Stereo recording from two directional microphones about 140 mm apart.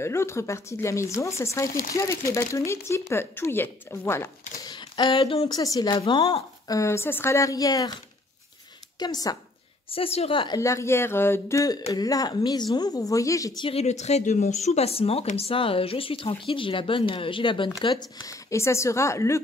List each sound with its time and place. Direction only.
0.0 s speech: 20° left (ahead or behind)
4.6 s a sound: 30° left (ahead or behind)
5.5 s speech: 25° left (ahead or behind)
6.8 s speech: 20° left (ahead or behind)
9.0 s speech: 25° left (ahead or behind)
9.8 s speech: 45° left (ahead or behind)
10.6 s speech: 20° left (ahead or behind)
13.6 s speech: 45° left (ahead or behind); by 19.4 s 20° left (ahead or behind)